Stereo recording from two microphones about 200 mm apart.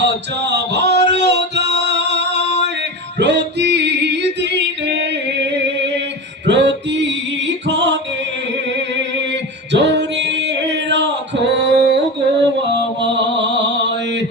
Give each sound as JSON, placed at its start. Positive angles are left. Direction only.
{"t": 0.0, "sound": "music", "side_deg": -60}
{"t": 6.5, "sound": "music", "side_deg": -60}
{"t": 9.7, "sound": "music", "side_deg": -60}
{"t": 10.8, "sound": "male singing", "side_deg": -60}